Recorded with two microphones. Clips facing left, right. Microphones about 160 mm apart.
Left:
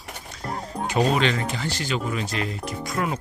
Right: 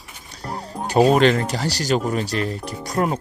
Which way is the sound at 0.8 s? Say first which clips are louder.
Right 7 dB; 40° right (ahead or behind).